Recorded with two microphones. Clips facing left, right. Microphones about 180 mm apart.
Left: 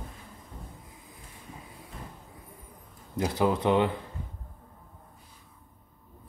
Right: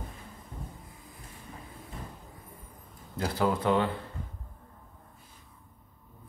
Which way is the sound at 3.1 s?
20° left (ahead or behind).